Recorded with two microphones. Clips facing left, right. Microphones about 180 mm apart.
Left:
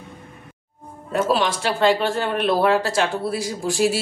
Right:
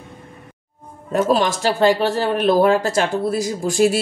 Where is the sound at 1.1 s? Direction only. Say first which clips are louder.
Right 3 dB; 45° right (ahead or behind).